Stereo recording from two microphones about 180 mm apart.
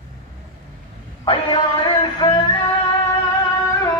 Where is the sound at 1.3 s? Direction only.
25° left (ahead or behind).